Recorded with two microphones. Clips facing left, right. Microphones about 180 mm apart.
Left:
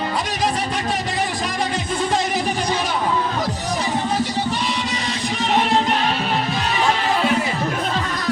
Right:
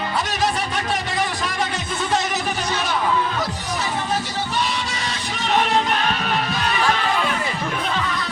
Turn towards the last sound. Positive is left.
turn(degrees=30)  # may be behind; listen again after turning